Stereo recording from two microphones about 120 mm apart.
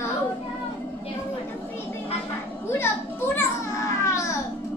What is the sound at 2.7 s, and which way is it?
Children playing, 20° left (ahead or behind).